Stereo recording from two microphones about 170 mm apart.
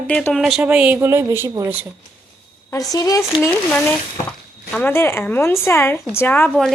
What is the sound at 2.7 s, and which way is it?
Speech, 20° left (ahead or behind).